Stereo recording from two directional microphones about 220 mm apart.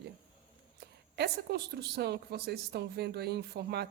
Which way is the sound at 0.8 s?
45° right (ahead or behind).